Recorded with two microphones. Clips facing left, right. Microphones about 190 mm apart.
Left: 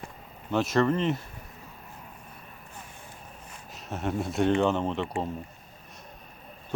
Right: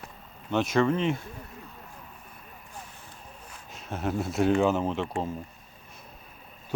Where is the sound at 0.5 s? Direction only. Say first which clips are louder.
Even; centre (ahead or behind).